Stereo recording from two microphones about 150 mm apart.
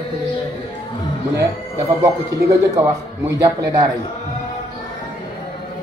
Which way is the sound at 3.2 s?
20° right (ahead or behind).